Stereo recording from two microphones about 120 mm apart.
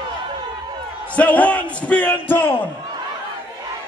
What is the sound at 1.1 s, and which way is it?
Speech, 10° left (ahead or behind).